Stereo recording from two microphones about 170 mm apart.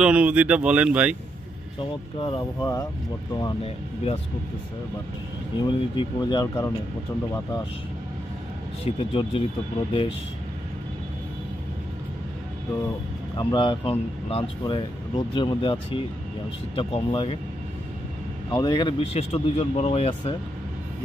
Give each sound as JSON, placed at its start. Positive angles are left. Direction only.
{"t": 0.0, "sound": "speech", "side_deg": -10}
{"t": 1.8, "sound": "speech", "side_deg": 30}
{"t": 5.6, "sound": "speech", "side_deg": 25}
{"t": 8.8, "sound": "speech", "side_deg": 30}
{"t": 13.4, "sound": "speech", "side_deg": 25}
{"t": 18.5, "sound": "speech", "side_deg": 25}